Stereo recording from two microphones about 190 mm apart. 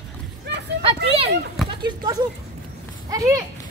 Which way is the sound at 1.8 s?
20° right (ahead or behind).